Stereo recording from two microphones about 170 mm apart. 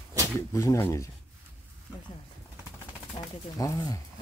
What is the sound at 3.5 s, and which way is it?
Speech, 20° left (ahead or behind).